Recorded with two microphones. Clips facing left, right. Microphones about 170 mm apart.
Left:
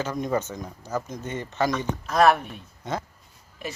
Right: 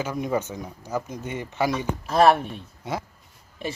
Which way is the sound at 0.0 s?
10° right (ahead or behind).